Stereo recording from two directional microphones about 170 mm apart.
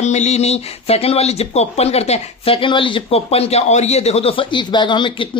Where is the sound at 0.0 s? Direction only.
40° left (ahead or behind).